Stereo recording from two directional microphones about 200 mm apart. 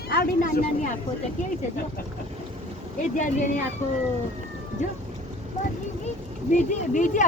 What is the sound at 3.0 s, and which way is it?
Speech, 40° left (ahead or behind).